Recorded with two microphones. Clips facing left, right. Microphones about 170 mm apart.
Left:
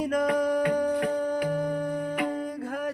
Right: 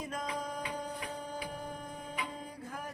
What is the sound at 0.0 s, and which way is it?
Music, 75° left (ahead or behind).